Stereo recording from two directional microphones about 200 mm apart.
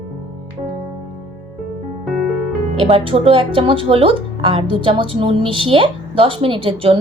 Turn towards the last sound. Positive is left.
turn(degrees=-25)  # may be behind; listen again after turning